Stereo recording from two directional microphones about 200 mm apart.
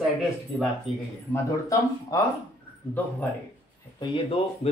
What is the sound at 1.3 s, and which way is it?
Speech, 15° left (ahead or behind).